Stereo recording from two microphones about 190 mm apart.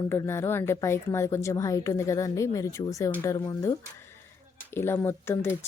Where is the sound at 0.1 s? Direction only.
15° left (ahead or behind).